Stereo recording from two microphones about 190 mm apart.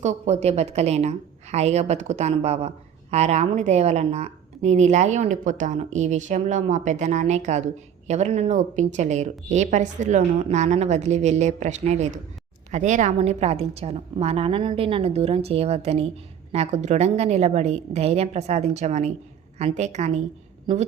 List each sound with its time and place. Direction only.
0.0 s a woman's voice: 35° right (ahead or behind)